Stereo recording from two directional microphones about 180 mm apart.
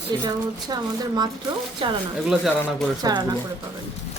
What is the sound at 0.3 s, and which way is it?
A woman's voice, 20° right (ahead or behind).